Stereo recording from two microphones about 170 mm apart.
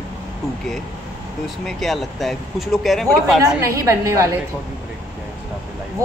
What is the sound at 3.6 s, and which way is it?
Speech, 20° right (ahead or behind).